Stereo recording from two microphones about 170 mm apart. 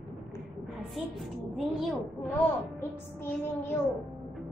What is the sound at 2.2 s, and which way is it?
Speech, 10° left (ahead or behind).